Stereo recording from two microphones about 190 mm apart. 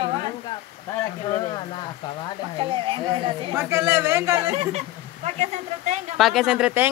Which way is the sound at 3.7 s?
15° right (ahead or behind).